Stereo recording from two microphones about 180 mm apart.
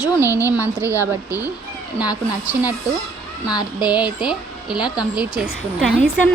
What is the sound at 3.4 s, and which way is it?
Speech, 20° left (ahead or behind).